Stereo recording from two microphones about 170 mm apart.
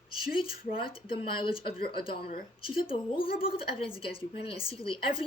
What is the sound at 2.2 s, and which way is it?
Speech, 55° left (ahead or behind).